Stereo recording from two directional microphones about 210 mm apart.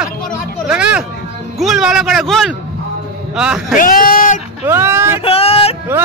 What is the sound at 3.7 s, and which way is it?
Speech, 40° left (ahead or behind).